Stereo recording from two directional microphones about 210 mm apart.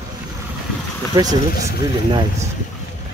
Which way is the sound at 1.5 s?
45° left (ahead or behind).